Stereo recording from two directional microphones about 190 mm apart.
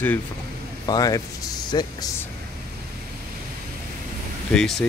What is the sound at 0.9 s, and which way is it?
Speech, 20° left (ahead or behind).